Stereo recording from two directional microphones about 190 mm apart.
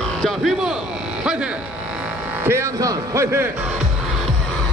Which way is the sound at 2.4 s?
15° right (ahead or behind).